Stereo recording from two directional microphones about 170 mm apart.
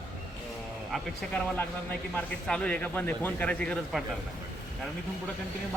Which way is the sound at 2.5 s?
10° left (ahead or behind).